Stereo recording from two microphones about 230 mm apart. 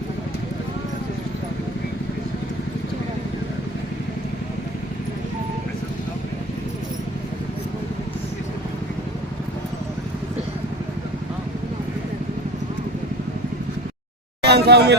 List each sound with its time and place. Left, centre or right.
14.4 s speech: right